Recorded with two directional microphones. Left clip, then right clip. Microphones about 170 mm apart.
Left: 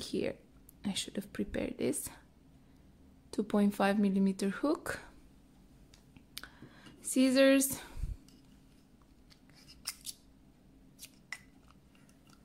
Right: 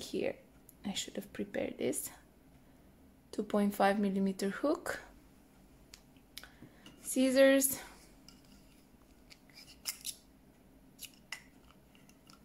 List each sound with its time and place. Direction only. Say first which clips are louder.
0.0 s speech: even; 20° left (ahead or behind)
3.3 s speech: left 1 dB; 20° left (ahead or behind)
6.4 s a sound: left 3 dB; 30° left (ahead or behind)
7.1 s speech: even; 25° left (ahead or behind)